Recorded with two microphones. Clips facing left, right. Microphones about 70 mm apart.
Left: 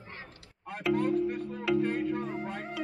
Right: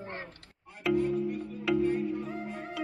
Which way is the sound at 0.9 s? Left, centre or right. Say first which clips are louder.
Left 1 dB; left.